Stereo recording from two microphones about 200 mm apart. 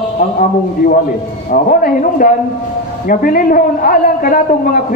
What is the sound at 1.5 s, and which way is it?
A man's voice, 45° left (ahead or behind).